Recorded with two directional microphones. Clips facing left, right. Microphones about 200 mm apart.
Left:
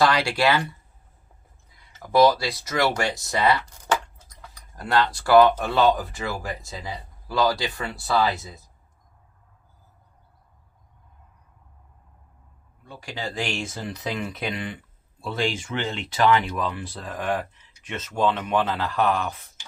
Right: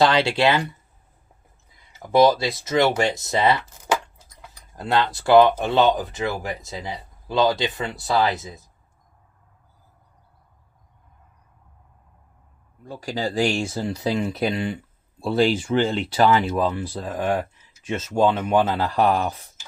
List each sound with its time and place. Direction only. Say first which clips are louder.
0.0 s speech: right 3 dB; 25° right (ahead or behind)
1.8 s speech: right 1 dB; 20° right (ahead or behind)
3.8 s a sound: right 2 dB; 10° right (ahead or behind)
4.8 s speech: right 1 dB; 25° right (ahead or behind)
12.8 s speech: right 6 dB; 40° right (ahead or behind)